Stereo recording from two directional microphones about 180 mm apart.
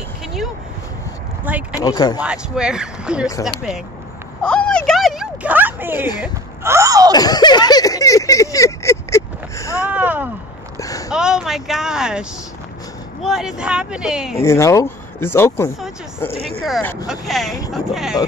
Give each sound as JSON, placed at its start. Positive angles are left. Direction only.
{"t": 1.4, "sound": "speech", "side_deg": -10}
{"t": 1.8, "sound": "speech", "side_deg": 20}
{"t": 2.1, "sound": "speech", "side_deg": -5}
{"t": 4.4, "sound": "a sound", "side_deg": 5}
{"t": 6.2, "sound": "speech", "side_deg": -15}
{"t": 7.2, "sound": "a sound", "side_deg": 20}
{"t": 9.8, "sound": "a sound", "side_deg": -10}
{"t": 10.8, "sound": "a sound", "side_deg": 20}
{"t": 11.1, "sound": "speech", "side_deg": -5}
{"t": 14.4, "sound": "speech", "side_deg": 15}
{"t": 16.8, "sound": "speech", "side_deg": 15}
{"t": 17.1, "sound": "speech", "side_deg": 0}